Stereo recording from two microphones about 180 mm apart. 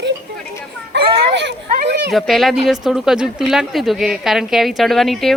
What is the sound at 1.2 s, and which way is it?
Children playing, 75° right (ahead or behind).